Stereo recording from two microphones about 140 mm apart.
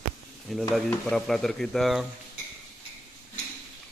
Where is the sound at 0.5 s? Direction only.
Centre (ahead or behind).